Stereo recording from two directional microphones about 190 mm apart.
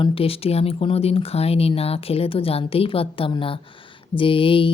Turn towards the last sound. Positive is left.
turn(degrees=25)  # may be behind; listen again after turning